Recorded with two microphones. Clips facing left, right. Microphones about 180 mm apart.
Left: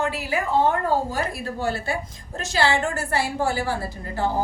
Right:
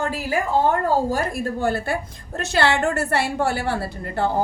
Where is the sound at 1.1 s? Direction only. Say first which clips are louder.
Right 4 dB; 50° right (ahead or behind).